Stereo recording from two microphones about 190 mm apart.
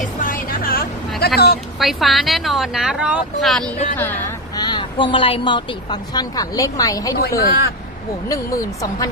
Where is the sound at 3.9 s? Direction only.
10° left (ahead or behind).